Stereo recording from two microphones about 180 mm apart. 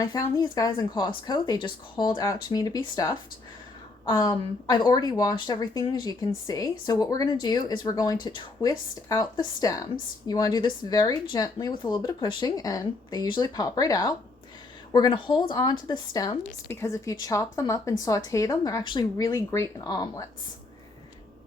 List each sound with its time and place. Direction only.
0.0 s a woman's voice: 20° left (ahead or behind)